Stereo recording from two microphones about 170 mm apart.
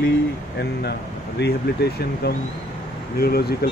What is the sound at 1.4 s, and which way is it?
Speech, 70° left (ahead or behind).